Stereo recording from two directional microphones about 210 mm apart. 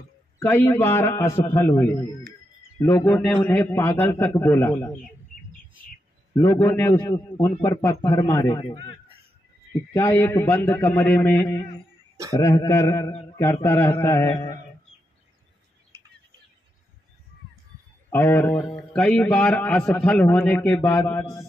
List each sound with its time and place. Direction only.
0.4 s a man's voice: 10° left (ahead or behind)
6.3 s a man's voice: 15° left (ahead or behind)
9.9 s a man's voice: 10° left (ahead or behind)
18.1 s a man's voice: 10° left (ahead or behind)